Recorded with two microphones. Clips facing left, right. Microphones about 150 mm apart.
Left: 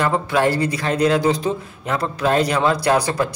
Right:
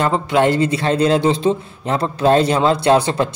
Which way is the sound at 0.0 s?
20° right (ahead or behind).